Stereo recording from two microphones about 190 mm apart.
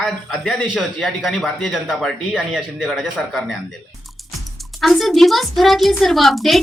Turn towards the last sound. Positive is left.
turn(degrees=0)  # may be behind; listen again after turning